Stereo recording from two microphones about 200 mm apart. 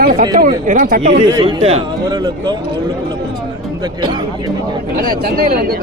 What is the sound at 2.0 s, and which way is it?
Speech, 20° right (ahead or behind).